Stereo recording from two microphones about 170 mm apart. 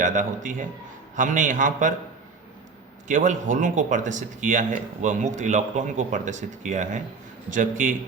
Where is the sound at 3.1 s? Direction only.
45° right (ahead or behind).